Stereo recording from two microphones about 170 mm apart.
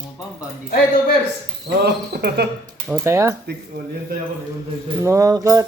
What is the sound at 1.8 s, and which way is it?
Speech, 70° right (ahead or behind).